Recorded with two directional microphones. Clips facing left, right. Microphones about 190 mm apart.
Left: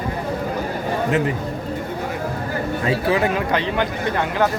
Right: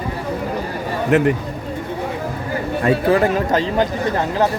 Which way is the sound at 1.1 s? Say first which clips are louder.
Right 7 dB; 60° right (ahead or behind).